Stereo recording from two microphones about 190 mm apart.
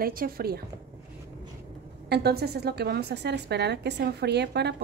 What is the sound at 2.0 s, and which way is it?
A woman's voice, 60° right (ahead or behind).